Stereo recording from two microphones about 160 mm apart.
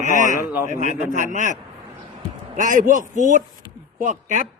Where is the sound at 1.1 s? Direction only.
50° right (ahead or behind).